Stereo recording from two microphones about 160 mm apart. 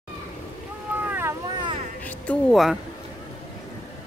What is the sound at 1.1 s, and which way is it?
Boat, 15° right (ahead or behind).